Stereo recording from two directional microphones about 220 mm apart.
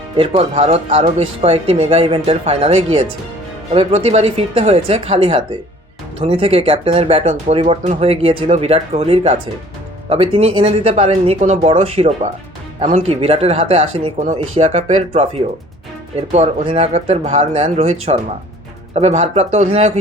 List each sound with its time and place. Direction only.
0.2 s speech: 25° right (ahead or behind)
18.9 s speech: 30° right (ahead or behind)